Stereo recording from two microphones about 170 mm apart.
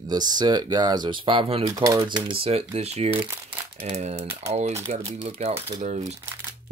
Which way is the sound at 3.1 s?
15° right (ahead or behind).